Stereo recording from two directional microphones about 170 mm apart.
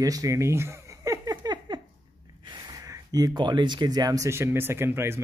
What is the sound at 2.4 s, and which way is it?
Speech, 25° right (ahead or behind).